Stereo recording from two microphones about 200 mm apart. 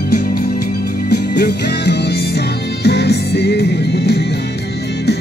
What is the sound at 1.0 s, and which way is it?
Music, 55° left (ahead or behind).